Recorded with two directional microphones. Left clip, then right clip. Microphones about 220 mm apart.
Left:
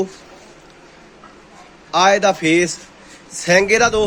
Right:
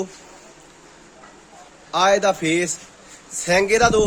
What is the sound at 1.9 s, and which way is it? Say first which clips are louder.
Speech: left 3 dB; 10° right (ahead or behind).